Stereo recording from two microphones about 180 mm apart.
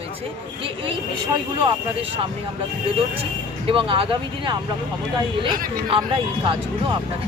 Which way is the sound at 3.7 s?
30° right (ahead or behind).